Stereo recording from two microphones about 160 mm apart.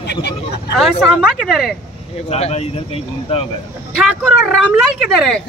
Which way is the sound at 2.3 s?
40° left (ahead or behind).